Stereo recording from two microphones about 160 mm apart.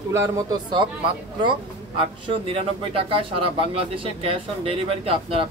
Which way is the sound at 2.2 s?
35° right (ahead or behind).